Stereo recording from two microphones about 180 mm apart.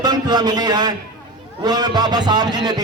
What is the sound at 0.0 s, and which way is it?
A man's voice, 25° right (ahead or behind).